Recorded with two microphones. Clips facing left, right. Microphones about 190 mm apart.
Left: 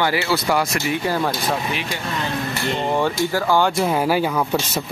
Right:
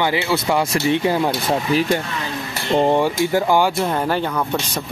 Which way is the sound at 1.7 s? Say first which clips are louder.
Right 9 dB; 40° right (ahead or behind).